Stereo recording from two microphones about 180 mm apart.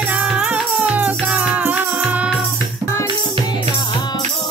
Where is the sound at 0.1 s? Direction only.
5° right (ahead or behind).